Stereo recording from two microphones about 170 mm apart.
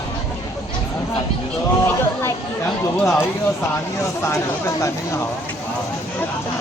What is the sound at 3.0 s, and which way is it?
Speech, 10° left (ahead or behind).